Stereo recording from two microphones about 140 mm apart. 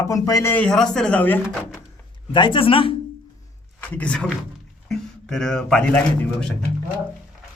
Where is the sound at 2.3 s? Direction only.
35° left (ahead or behind).